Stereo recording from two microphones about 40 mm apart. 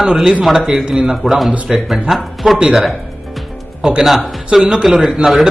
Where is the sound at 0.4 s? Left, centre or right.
Centre.